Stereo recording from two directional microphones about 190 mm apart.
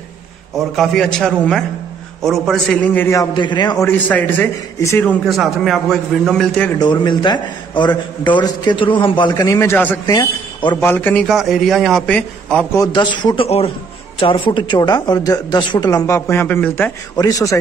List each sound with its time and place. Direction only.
0.6 s a man's voice: centre (ahead or behind); by 3.8 s 20° left (ahead or behind)
3.8 s a man's voice: 10° left (ahead or behind)
6.8 s a man's voice: 25° left (ahead or behind)
10.0 s a man's voice: 25° left (ahead or behind)
10.8 s a man's voice: 10° left (ahead or behind)
12.7 s a man's voice: 20° left (ahead or behind)